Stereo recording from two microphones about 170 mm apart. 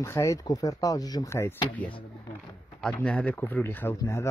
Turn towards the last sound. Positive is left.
turn(degrees=15)  # may be behind; listen again after turning